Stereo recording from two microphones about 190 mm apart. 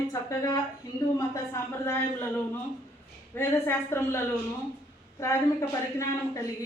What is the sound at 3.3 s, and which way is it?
Speech, 10° left (ahead or behind).